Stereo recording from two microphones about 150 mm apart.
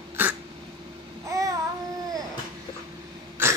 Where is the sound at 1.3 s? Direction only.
20° right (ahead or behind).